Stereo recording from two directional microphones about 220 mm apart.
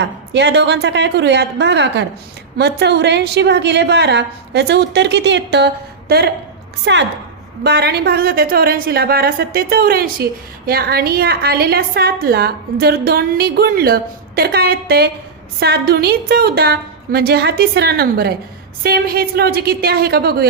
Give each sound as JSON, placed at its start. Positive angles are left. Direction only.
{"t": 0.0, "sound": "a woman's voice", "side_deg": -50}